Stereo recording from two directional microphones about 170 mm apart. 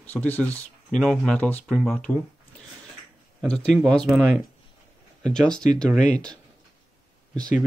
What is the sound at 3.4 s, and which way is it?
Speech, 5° left (ahead or behind).